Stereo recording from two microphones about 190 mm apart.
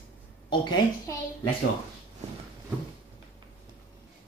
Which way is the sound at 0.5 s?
25° left (ahead or behind).